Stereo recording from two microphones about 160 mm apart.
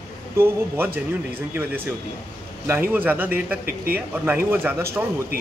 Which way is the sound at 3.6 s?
70° right (ahead or behind).